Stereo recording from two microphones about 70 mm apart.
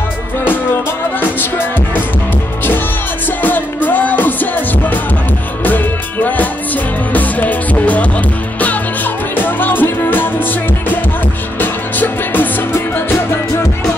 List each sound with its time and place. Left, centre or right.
3.4 s music: left
9.4 s music: left
11.6 s music: left
13.1 s music: left